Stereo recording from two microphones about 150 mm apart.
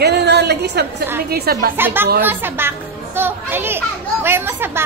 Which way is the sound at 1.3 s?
90° right.